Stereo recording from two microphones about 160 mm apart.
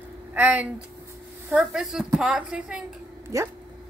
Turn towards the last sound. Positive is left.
turn(degrees=-20)  # may be behind; listen again after turning